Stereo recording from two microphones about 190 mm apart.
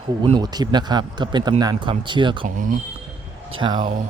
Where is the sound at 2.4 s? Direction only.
45° right (ahead or behind).